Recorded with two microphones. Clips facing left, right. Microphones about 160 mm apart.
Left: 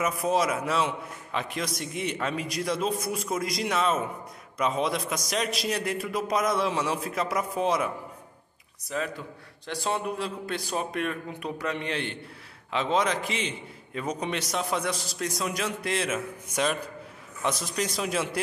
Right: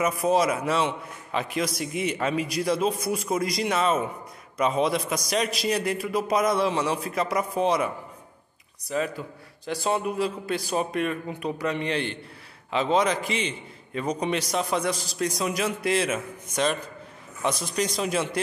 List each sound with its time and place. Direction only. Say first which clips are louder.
0.0 s a man's voice: right 3 dB; centre (ahead or behind)